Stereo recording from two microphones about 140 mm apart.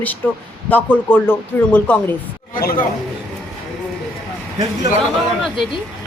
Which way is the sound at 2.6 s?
90° left.